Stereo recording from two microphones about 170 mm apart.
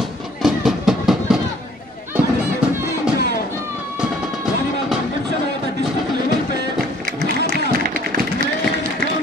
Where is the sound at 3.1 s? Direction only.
65° left (ahead or behind).